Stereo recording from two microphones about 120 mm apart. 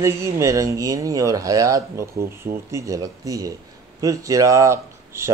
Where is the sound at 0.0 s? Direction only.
25° right (ahead or behind).